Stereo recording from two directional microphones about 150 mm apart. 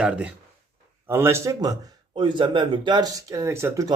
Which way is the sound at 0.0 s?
5° right (ahead or behind).